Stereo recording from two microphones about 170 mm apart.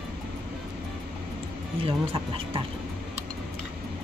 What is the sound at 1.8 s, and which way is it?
Speech, 35° right (ahead or behind).